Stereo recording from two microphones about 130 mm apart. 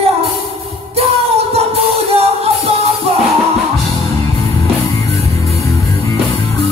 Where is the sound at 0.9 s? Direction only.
50° right (ahead or behind).